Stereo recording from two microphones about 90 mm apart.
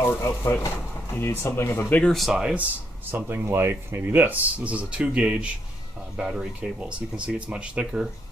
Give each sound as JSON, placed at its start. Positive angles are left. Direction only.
{"t": 0.0, "sound": "speech", "side_deg": 30}
{"t": 2.1, "sound": "speech", "side_deg": -5}
{"t": 3.1, "sound": "speech", "side_deg": -25}